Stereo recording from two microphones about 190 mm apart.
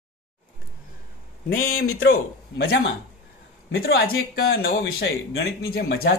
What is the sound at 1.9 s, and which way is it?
Speech, 55° left (ahead or behind).